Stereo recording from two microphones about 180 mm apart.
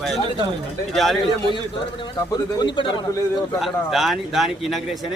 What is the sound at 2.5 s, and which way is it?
Speech, 25° left (ahead or behind).